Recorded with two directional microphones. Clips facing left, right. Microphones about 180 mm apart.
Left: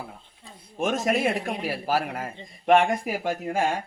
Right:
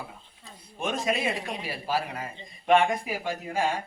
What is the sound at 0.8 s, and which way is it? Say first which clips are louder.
A man's voice: left 4 dB; 45° left (ahead or behind).